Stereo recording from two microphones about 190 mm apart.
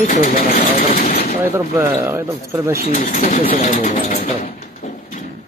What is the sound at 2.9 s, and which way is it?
Speech, 45° left (ahead or behind).